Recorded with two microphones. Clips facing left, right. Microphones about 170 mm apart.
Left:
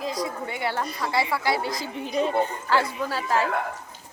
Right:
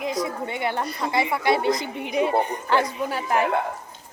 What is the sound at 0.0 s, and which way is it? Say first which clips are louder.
Speech: right 2 dB; 20° right (ahead or behind).